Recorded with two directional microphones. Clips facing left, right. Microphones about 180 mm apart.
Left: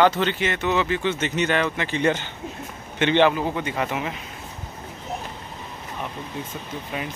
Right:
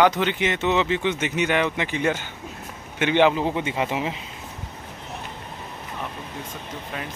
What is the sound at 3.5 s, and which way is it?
Speech, 25° right (ahead or behind).